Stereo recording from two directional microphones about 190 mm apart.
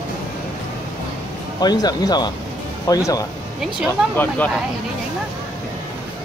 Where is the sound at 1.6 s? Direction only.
20° left (ahead or behind).